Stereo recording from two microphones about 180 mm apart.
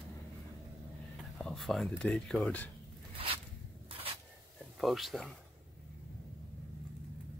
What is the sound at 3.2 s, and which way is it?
Zipper, 30° right (ahead or behind).